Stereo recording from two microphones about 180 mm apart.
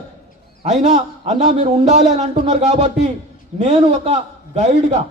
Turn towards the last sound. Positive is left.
turn(degrees=-40)  # may be behind; listen again after turning